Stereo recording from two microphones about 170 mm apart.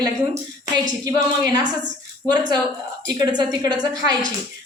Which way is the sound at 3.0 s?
25° right (ahead or behind).